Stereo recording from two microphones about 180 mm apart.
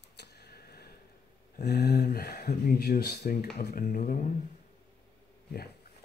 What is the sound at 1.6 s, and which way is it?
Speech, 65° left (ahead or behind).